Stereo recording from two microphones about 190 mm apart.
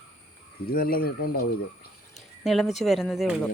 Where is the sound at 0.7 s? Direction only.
50° left (ahead or behind).